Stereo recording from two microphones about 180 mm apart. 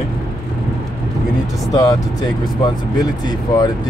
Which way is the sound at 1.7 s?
20° left (ahead or behind).